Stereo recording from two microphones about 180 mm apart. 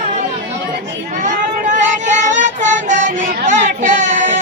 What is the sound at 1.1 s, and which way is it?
Child singing, 45° right (ahead or behind).